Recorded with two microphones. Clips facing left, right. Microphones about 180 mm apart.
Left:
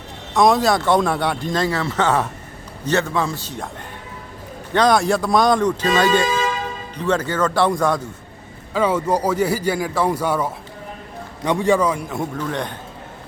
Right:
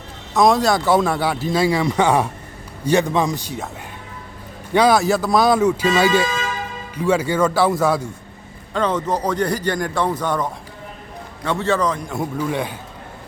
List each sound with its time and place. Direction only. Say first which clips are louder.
0.3 s speech: even; centre (ahead or behind)
4.7 s speech: right 1 dB; 5° right (ahead or behind)
8.7 s speech: left 2 dB; 10° left (ahead or behind)
12.4 s speech: right 2 dB; 10° right (ahead or behind)